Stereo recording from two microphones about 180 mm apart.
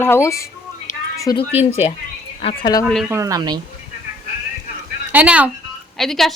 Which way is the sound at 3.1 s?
20° right (ahead or behind).